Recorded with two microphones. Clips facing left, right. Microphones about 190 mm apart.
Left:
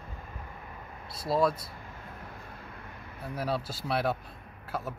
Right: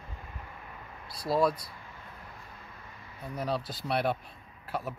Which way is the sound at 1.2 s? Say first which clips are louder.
Even; centre (ahead or behind).